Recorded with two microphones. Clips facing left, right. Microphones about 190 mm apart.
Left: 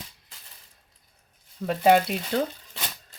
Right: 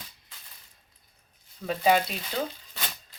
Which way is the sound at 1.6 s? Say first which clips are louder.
Left 4 dB; 60° left (ahead or behind).